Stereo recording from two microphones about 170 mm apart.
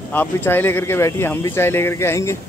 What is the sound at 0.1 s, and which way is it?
Speech, 10° left (ahead or behind).